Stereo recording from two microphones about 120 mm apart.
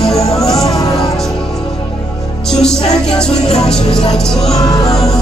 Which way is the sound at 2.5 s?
5° left (ahead or behind).